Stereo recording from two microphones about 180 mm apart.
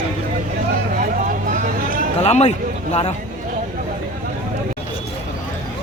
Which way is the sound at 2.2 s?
35° left (ahead or behind).